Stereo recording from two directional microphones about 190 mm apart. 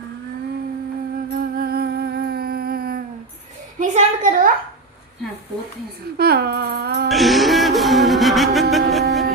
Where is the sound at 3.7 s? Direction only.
40° right (ahead or behind).